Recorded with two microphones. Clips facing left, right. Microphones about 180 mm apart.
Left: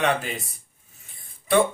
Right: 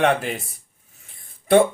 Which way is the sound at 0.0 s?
55° right (ahead or behind).